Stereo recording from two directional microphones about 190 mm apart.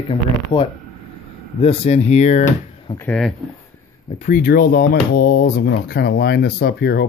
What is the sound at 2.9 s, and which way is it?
Speech, 5° left (ahead or behind).